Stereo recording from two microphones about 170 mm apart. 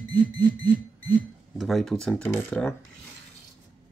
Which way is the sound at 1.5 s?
Centre (ahead or behind).